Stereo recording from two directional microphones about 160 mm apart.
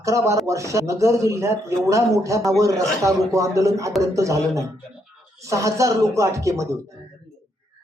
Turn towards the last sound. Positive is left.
turn(degrees=-20)  # may be behind; listen again after turning